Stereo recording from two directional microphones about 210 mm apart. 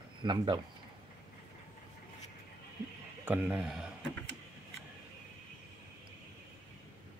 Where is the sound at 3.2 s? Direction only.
5° right (ahead or behind).